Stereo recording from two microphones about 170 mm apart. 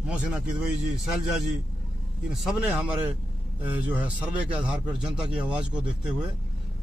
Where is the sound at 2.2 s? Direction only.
5° right (ahead or behind).